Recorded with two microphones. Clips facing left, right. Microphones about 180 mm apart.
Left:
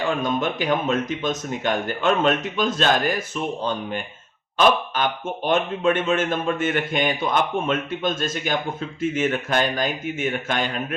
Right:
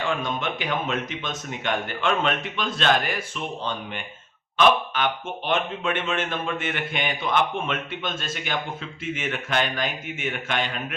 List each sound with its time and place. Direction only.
0.0 s speech: 40° left (ahead or behind)
5.5 s a man's voice: 40° left (ahead or behind)